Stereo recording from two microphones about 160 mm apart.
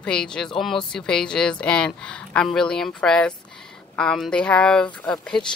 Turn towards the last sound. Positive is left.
turn(degrees=5)  # may be behind; listen again after turning